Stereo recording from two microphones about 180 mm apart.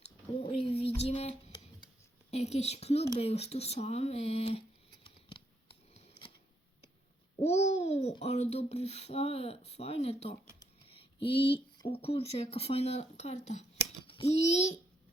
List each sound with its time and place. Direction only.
0.6 s child singing: 35° left (ahead or behind)
1.0 s music: 35° left (ahead or behind)
2.3 s speech: 35° left (ahead or behind)
7.7 s a child's voice: 35° left (ahead or behind)